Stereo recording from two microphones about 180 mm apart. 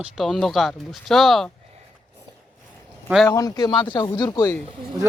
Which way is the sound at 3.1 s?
Centre (ahead or behind).